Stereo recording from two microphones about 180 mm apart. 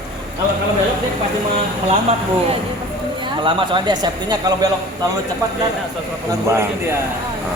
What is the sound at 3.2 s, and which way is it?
Speech, 25° right (ahead or behind).